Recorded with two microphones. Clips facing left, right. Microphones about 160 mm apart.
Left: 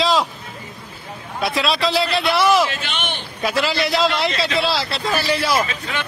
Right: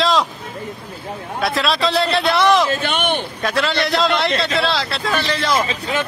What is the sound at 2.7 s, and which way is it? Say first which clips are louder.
Speech: right 8 dB; 55° right (ahead or behind).